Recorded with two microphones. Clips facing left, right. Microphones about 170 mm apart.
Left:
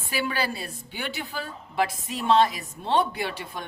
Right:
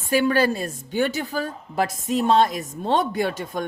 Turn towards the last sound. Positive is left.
turn(degrees=-45)  # may be behind; listen again after turning